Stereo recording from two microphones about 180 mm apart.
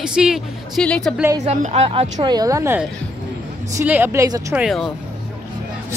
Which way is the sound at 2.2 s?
20° right (ahead or behind).